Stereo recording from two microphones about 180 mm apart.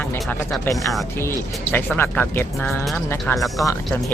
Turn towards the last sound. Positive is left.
turn(degrees=0)  # may be behind; listen again after turning